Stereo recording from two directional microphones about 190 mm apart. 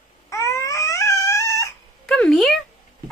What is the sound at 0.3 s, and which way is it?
Baby cry, 15° left (ahead or behind).